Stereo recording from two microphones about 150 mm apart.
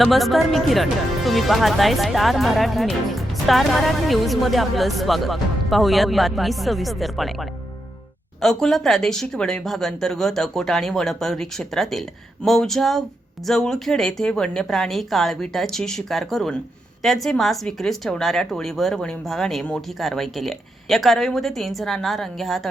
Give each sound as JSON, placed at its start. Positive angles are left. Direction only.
{"t": 0.0, "sound": "speech", "side_deg": 0}